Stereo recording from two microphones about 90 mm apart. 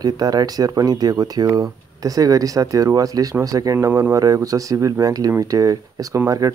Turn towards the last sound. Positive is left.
turn(degrees=-40)  # may be behind; listen again after turning